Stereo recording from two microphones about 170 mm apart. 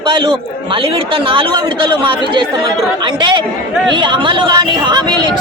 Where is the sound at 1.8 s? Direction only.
25° right (ahead or behind).